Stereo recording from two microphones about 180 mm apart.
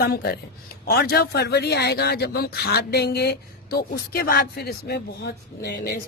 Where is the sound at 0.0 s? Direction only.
60° left (ahead or behind).